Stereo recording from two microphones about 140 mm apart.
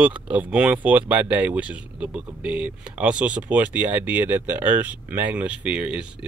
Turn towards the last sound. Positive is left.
turn(degrees=-5)  # may be behind; listen again after turning